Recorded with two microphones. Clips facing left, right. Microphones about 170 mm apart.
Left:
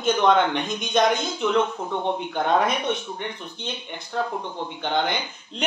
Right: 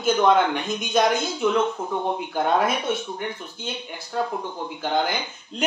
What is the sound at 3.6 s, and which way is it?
Speech, 5° right (ahead or behind).